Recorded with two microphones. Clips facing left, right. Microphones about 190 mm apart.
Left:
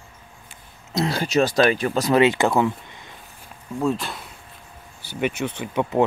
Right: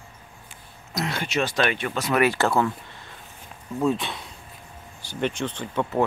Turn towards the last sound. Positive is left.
turn(degrees=10)  # may be behind; listen again after turning